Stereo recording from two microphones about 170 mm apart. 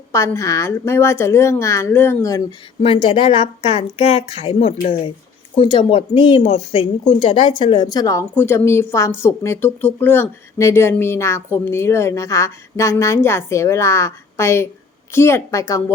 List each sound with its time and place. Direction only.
0.1 s a woman's voice: 15° left (ahead or behind)
2.8 s a woman's voice: 35° left (ahead or behind); by 15.8 s 20° left (ahead or behind)